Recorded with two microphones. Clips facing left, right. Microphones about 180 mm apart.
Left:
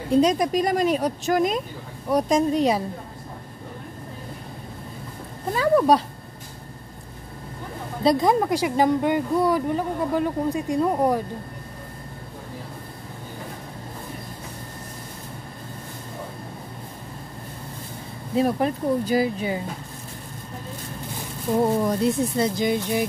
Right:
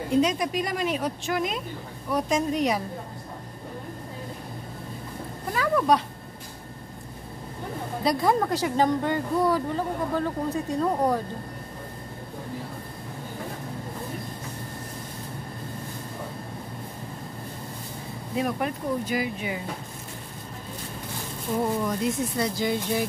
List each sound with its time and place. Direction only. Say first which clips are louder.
0.1 s a woman's voice: left 5 dB; 40° left (ahead or behind)
5.5 s a woman's voice: left 5 dB; 30° left (ahead or behind)
8.0 s speech: left 4 dB; 20° left (ahead or behind)
18.3 s a woman's voice: left 6 dB; 30° left (ahead or behind)
21.8 s a woman's voice: left 5 dB; 35° left (ahead or behind)
22.6 s speech: left 3 dB; 20° left (ahead or behind)